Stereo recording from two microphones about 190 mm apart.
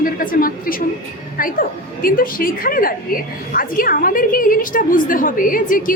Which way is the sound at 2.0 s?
50° left (ahead or behind).